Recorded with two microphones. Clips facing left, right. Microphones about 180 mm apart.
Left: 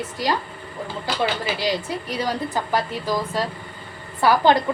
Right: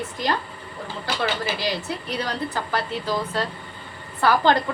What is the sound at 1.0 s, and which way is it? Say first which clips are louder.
A woman's voice: left 1 dB; 15° left (ahead or behind).